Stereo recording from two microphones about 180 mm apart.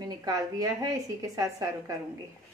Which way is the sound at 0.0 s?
20° right (ahead or behind).